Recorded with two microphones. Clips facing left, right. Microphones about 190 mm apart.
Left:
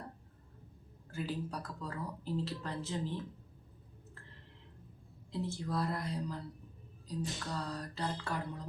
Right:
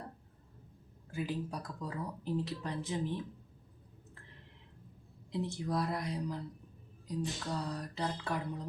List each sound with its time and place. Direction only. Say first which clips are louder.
1.1 s speech: right 1 dB; 15° right (ahead or behind)
5.3 s speech: right 2 dB; 20° right (ahead or behind)
7.1 s a sound: right 2 dB; 15° right (ahead or behind)